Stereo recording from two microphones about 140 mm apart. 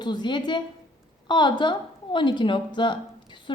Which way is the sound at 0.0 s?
30° left (ahead or behind).